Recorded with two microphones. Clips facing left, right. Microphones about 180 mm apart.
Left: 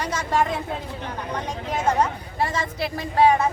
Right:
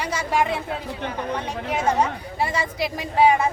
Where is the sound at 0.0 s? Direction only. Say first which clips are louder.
Even; 10° right (ahead or behind).